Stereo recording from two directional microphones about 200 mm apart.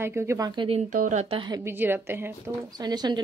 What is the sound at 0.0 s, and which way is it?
Speech, 10° right (ahead or behind).